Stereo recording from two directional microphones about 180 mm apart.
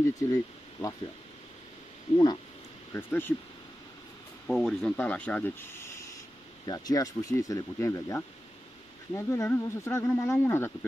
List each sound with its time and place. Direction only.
0.0 s speech: 15° left (ahead or behind)
2.9 s speech: 10° left (ahead or behind)
4.5 s speech: 5° left (ahead or behind)